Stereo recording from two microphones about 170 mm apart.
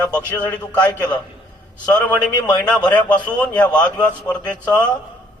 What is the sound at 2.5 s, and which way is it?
A man's voice, 5° left (ahead or behind).